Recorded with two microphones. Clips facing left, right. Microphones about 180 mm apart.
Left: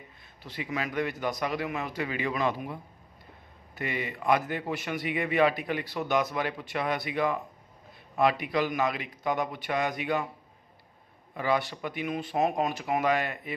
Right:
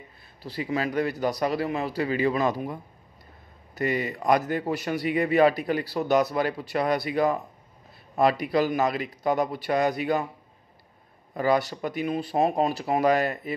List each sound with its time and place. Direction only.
0.4 s a man's voice: 35° right (ahead or behind)
11.3 s a man's voice: 40° right (ahead or behind)